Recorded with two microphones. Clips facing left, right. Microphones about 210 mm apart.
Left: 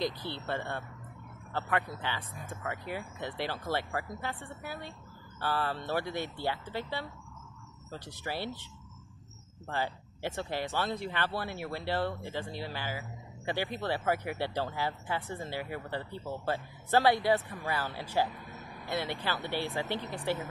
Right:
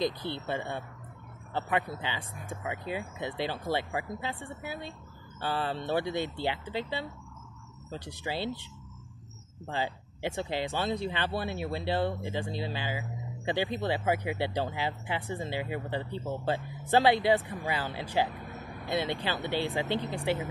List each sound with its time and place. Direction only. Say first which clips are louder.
0.0 s speech: right 3 dB; 20° right (ahead or behind)
9.7 s speech: right 1 dB; 15° right (ahead or behind)